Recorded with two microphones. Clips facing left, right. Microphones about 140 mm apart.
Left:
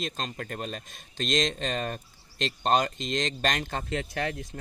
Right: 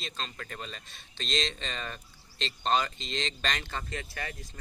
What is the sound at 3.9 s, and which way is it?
Speech, 65° left (ahead or behind).